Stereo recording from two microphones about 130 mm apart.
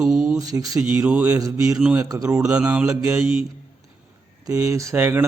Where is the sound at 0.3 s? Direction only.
25° right (ahead or behind).